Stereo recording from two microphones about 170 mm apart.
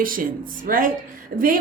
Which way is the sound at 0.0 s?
55° right (ahead or behind).